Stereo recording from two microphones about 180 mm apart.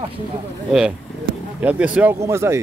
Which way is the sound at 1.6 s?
10° right (ahead or behind).